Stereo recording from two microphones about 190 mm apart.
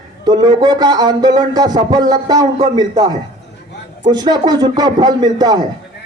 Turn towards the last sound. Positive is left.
turn(degrees=-20)  # may be behind; listen again after turning